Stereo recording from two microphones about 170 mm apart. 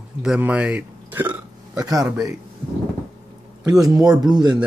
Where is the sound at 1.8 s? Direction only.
20° right (ahead or behind).